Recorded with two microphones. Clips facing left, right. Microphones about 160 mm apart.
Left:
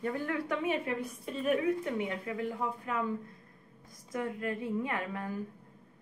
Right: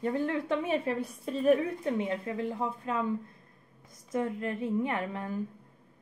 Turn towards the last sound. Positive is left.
turn(degrees=-25)  # may be behind; listen again after turning